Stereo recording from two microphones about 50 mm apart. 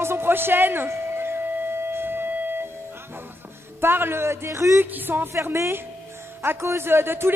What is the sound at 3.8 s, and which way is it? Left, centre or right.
A man's voice, right.